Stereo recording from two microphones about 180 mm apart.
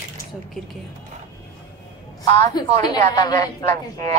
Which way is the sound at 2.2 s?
20° left (ahead or behind).